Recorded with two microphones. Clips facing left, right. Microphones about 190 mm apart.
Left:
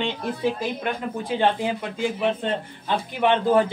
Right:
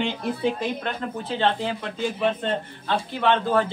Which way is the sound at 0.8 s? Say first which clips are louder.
Left 2 dB; 10° left (ahead or behind).